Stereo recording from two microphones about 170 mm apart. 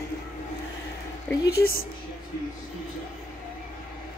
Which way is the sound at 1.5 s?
65° left (ahead or behind).